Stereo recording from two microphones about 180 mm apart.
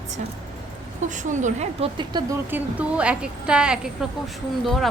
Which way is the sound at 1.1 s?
45° right (ahead or behind).